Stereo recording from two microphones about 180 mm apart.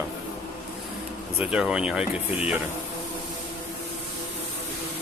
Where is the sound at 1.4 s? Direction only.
5° right (ahead or behind).